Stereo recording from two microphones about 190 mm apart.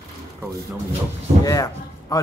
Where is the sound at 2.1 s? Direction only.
20° left (ahead or behind).